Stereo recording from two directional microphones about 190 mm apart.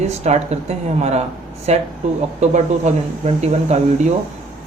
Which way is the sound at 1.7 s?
35° right (ahead or behind).